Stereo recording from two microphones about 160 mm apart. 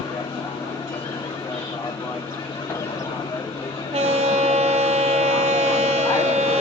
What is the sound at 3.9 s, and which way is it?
Train, 40° right (ahead or behind).